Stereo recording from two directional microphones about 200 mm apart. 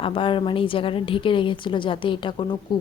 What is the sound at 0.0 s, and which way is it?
A woman's voice, 25° left (ahead or behind).